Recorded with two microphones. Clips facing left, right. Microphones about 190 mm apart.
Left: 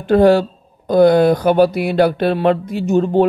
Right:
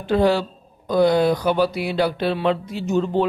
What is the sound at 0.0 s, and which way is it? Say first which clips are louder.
Speech: left 7 dB; 50° left (ahead or behind).